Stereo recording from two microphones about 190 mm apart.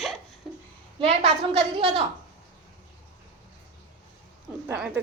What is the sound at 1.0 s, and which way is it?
A woman's voice, 30° right (ahead or behind).